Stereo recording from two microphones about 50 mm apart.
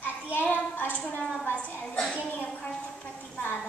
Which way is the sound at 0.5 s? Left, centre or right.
Left.